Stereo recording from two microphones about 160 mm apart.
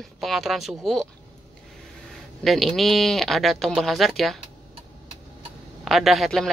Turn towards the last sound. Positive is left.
turn(degrees=0)  # may be behind; listen again after turning